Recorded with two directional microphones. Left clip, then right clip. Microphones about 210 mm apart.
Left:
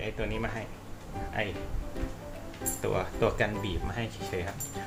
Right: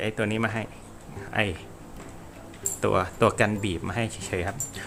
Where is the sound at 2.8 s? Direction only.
45° right (ahead or behind).